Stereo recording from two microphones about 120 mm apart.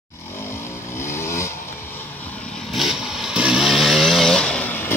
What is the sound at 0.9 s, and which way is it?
Vehicle, 20° left (ahead or behind).